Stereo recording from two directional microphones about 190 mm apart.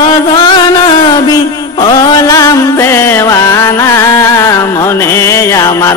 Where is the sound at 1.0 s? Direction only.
20° left (ahead or behind).